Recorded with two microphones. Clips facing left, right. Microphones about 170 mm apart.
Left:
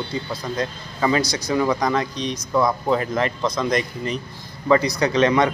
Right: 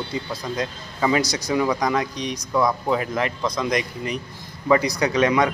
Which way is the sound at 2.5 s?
5° left (ahead or behind).